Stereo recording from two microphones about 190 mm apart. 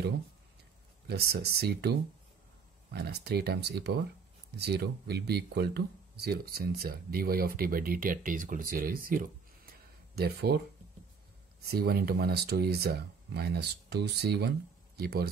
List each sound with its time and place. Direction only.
1.0 s speech: 60° right (ahead or behind)
11.6 s speech: 55° right (ahead or behind)